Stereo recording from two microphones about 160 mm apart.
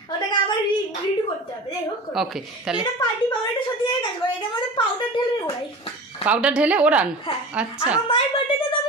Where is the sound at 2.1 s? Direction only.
5° right (ahead or behind).